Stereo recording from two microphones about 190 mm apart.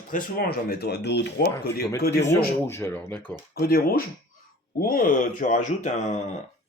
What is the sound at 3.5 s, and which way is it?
Speech, 55° left (ahead or behind).